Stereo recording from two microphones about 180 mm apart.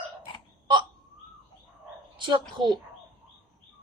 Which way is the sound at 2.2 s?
25° right (ahead or behind).